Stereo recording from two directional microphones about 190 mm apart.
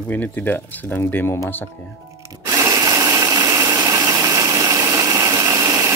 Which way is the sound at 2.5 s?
20° right (ahead or behind).